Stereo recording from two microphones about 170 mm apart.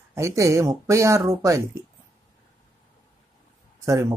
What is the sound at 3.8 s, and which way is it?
Speech, 15° right (ahead or behind).